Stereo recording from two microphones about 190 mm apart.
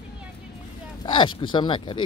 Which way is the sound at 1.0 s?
25° left (ahead or behind).